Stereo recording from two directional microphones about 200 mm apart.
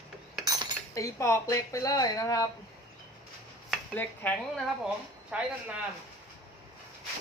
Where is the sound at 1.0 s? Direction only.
15° left (ahead or behind).